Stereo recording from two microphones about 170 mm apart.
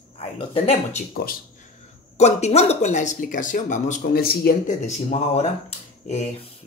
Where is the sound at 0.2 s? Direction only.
35° left (ahead or behind).